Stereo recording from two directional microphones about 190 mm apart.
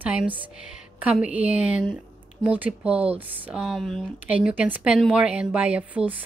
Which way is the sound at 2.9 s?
30° right (ahead or behind).